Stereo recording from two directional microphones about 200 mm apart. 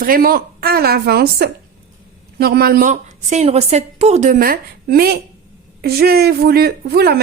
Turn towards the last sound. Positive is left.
turn(degrees=-50)  # may be behind; listen again after turning